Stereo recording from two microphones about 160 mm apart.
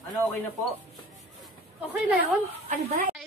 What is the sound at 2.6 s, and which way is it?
Speech, 50° right (ahead or behind).